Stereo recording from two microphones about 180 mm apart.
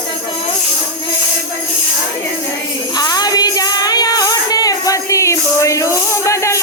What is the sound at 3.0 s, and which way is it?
Child singing, 20° left (ahead or behind).